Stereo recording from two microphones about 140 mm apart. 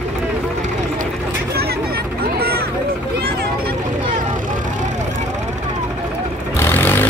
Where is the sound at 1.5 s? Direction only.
90° right.